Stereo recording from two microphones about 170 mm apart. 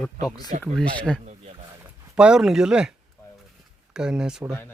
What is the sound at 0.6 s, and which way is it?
Speech, 5° left (ahead or behind).